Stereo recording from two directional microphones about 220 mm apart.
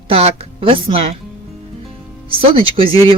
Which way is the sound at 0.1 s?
25° right (ahead or behind).